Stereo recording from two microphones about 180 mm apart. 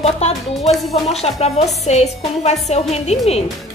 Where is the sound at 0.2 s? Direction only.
35° left (ahead or behind).